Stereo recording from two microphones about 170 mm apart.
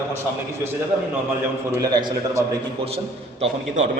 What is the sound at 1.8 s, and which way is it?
Speech, 25° right (ahead or behind).